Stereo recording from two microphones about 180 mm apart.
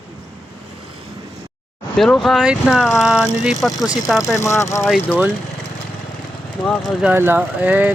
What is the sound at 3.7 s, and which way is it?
Speech, 20° left (ahead or behind).